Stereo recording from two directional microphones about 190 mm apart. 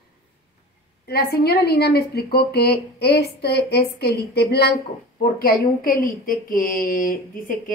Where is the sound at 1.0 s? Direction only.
55° left (ahead or behind).